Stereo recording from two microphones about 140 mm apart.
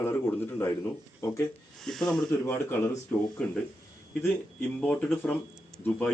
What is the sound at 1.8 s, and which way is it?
Speech, centre (ahead or behind).